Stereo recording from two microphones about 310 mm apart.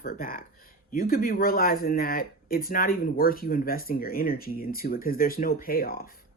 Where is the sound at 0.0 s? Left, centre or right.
Left.